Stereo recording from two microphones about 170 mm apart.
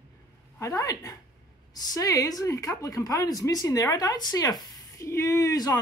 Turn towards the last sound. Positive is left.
turn(degrees=20)  # may be behind; listen again after turning